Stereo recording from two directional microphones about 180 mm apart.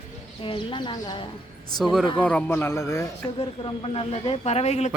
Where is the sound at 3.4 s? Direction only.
30° left (ahead or behind).